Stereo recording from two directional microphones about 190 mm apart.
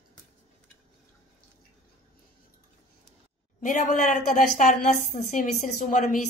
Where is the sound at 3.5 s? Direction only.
45° left (ahead or behind).